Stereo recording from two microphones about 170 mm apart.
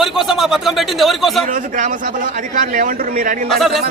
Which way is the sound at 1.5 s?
50° right (ahead or behind).